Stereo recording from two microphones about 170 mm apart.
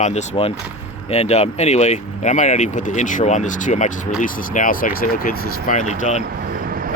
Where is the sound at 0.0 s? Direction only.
40° left (ahead or behind).